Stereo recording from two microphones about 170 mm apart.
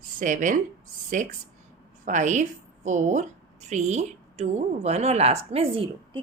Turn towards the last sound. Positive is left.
turn(degrees=-35)  # may be behind; listen again after turning